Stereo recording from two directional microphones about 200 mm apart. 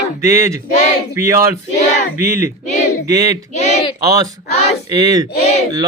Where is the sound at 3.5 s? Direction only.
35° left (ahead or behind).